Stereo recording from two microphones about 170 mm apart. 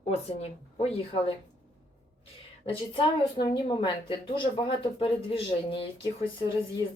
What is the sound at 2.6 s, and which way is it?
A woman's voice, 30° left (ahead or behind).